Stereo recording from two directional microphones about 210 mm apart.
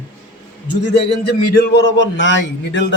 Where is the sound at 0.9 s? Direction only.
50° left (ahead or behind).